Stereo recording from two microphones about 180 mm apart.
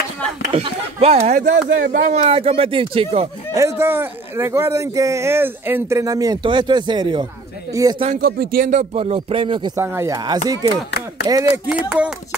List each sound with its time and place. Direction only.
0.5 s speech: 35° right (ahead or behind)
3.5 s speech: 15° right (ahead or behind)
8.2 s speech: 55° right (ahead or behind)
8.7 s speech: 35° right (ahead or behind)
9.8 s speech: 15° right (ahead or behind)